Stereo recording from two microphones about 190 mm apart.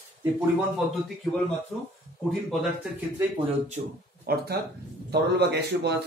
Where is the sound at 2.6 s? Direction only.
10° right (ahead or behind).